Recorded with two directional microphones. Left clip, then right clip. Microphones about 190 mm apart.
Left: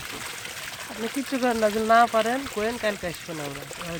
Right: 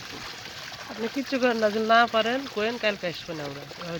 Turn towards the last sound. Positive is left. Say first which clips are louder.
# even
turn(degrees=10)  # may be behind; listen again after turning